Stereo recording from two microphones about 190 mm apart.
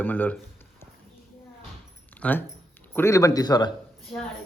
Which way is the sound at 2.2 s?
10° left (ahead or behind).